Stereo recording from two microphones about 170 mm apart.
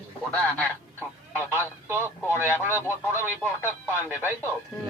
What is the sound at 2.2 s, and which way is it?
Speech, 15° left (ahead or behind).